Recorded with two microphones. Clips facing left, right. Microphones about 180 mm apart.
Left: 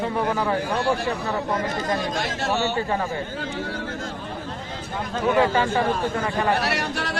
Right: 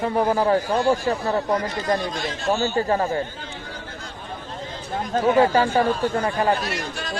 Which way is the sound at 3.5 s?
50° left (ahead or behind).